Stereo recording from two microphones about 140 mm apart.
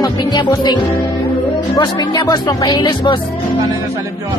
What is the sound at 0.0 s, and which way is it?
Music, 30° left (ahead or behind).